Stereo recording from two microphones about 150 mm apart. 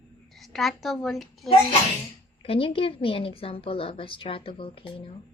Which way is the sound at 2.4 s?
35° left (ahead or behind).